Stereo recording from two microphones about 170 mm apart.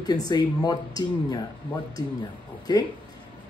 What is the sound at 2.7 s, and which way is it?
Speech, 25° left (ahead or behind).